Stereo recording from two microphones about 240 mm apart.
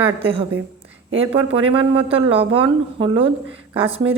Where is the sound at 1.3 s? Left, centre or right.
Right.